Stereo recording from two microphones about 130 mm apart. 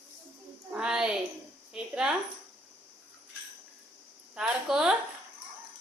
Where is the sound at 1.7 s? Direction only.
5° right (ahead or behind).